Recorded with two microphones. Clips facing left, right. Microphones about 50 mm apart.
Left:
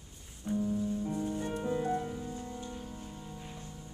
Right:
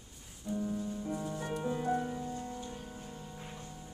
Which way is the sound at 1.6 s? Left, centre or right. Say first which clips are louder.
Even; centre.